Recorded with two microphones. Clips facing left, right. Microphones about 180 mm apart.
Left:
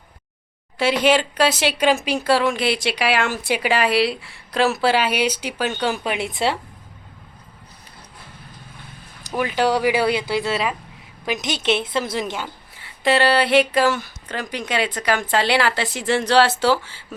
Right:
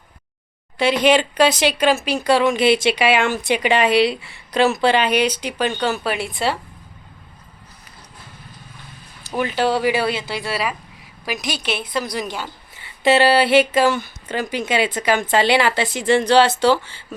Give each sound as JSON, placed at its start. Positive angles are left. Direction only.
{"t": 0.8, "sound": "speech", "side_deg": 5}
{"t": 9.2, "sound": "a woman's voice", "side_deg": 10}
{"t": 12.7, "sound": "speech", "side_deg": 0}